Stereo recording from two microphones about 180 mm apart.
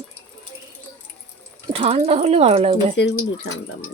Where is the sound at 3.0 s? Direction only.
70° left (ahead or behind).